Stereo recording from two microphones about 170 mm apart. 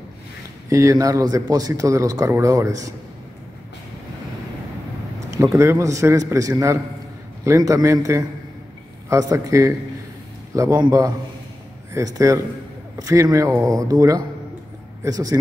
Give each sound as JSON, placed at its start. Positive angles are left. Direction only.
{"t": 0.7, "sound": "a man's voice", "side_deg": -20}
{"t": 5.3, "sound": "a man's voice", "side_deg": -15}